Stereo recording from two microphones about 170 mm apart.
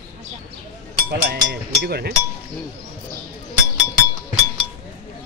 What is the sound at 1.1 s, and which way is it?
Speech, 80° right.